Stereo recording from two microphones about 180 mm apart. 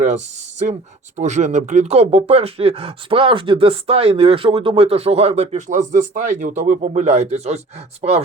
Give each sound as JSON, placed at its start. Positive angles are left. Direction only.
{"t": 0.6, "sound": "speech", "side_deg": -40}